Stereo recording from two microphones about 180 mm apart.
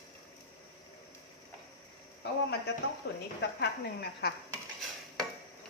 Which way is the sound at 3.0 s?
65° left (ahead or behind).